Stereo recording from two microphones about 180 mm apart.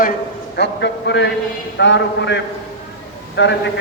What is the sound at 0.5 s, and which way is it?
A man's voice, 70° left (ahead or behind).